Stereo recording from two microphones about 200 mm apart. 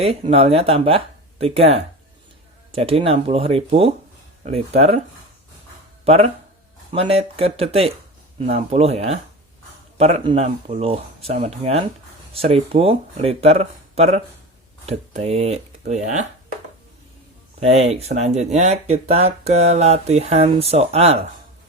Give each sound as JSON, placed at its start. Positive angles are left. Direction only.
{"t": 0.0, "sound": "speech", "side_deg": -30}
{"t": 6.1, "sound": "speech", "side_deg": -30}
{"t": 17.6, "sound": "speech", "side_deg": -30}